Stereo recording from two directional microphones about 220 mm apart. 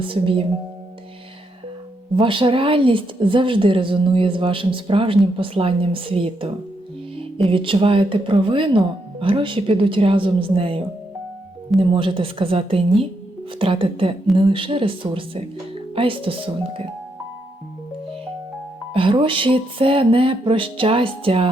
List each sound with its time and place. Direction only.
0.0 s speech: 25° right (ahead or behind)
2.1 s speech: 25° right (ahead or behind)
18.9 s speech: 25° right (ahead or behind)